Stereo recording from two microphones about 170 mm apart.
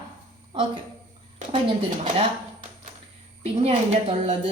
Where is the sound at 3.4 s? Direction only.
35° right (ahead or behind).